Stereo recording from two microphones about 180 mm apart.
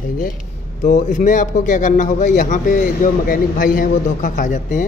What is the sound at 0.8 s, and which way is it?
A man's voice, 40° left (ahead or behind).